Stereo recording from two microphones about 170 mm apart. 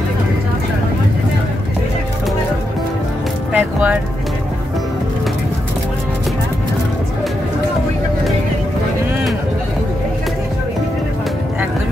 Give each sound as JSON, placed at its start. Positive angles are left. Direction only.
{"t": 3.5, "sound": "music", "side_deg": -10}